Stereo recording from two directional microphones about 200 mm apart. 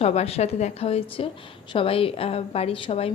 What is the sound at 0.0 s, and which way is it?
A woman's voice, 30° left (ahead or behind).